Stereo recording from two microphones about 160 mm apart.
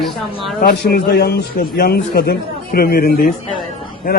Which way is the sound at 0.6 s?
85° left.